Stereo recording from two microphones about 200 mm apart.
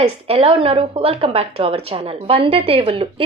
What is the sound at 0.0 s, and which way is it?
Speech, 30° right (ahead or behind).